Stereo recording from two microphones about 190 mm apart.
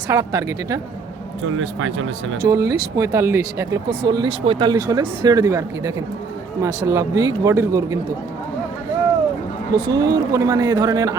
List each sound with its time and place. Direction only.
0.1 s speech: 15° right (ahead or behind)
1.5 s speech: 90° right
2.4 s speech: 15° right (ahead or behind)
9.7 s speech: 25° right (ahead or behind)